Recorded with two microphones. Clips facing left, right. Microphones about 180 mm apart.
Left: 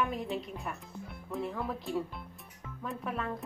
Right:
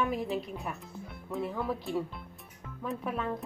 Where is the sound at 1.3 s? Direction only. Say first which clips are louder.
Right 2 dB; centre (ahead or behind).